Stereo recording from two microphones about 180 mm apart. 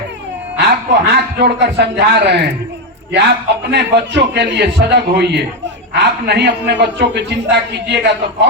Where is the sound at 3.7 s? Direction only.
70° right (ahead or behind).